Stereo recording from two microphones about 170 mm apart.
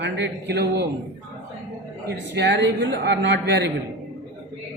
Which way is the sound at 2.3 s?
85° right.